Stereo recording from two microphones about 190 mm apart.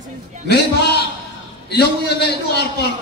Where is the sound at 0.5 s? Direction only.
60° left (ahead or behind).